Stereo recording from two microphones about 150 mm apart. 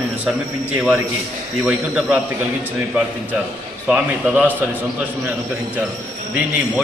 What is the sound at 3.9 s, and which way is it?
Speech, 10° right (ahead or behind).